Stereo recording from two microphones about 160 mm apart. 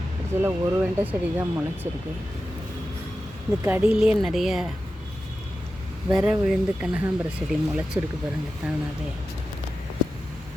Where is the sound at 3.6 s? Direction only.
10° right (ahead or behind).